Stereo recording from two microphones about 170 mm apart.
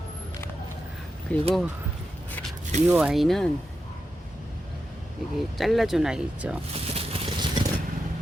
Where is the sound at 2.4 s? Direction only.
10° left (ahead or behind).